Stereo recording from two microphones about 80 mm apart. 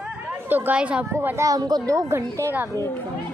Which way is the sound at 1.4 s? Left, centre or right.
Right.